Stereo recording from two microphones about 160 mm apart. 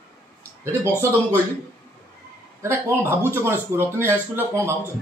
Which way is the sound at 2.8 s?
15° right (ahead or behind).